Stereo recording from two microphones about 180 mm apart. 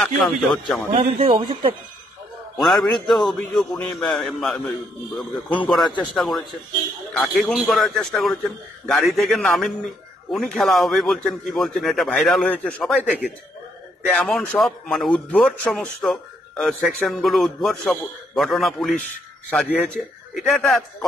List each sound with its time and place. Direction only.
0.0 s a man's voice: centre (ahead or behind)
0.9 s speech: 30° right (ahead or behind)
2.5 s a man's voice: centre (ahead or behind)
6.1 s a man's voice: centre (ahead or behind)